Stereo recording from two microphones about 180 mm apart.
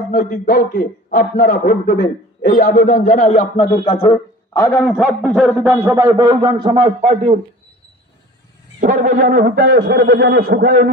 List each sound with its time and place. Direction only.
0.1 s a man's voice: 50° left (ahead or behind)
3.3 s speech: 35° left (ahead or behind)
4.1 s a man's voice: 15° left (ahead or behind); by 7.3 s 30° right (ahead or behind)
8.7 s speech: 45° right (ahead or behind); by 10.9 s 65° right (ahead or behind)